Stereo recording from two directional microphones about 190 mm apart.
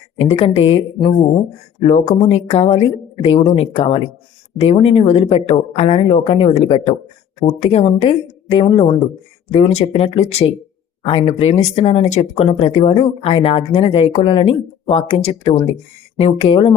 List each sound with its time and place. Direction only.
0.2 s speech: 30° left (ahead or behind)